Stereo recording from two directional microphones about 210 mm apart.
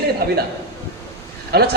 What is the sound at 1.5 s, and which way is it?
Speech, 50° right (ahead or behind).